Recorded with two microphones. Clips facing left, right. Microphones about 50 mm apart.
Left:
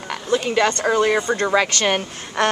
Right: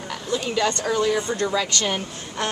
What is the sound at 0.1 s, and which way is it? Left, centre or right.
Speech, left.